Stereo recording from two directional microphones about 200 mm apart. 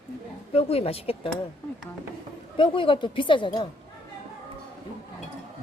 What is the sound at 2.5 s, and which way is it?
A woman's voice, 25° left (ahead or behind).